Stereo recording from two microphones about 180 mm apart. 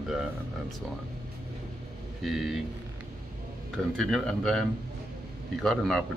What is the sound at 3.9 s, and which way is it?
Speech, 5° left (ahead or behind).